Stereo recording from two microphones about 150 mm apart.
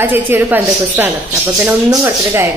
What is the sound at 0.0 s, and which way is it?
A woman's voice, 15° right (ahead or behind).